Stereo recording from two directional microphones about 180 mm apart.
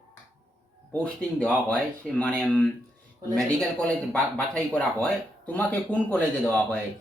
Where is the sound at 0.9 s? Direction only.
5° left (ahead or behind).